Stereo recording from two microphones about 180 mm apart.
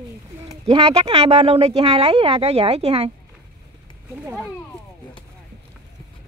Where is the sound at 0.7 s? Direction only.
35° right (ahead or behind).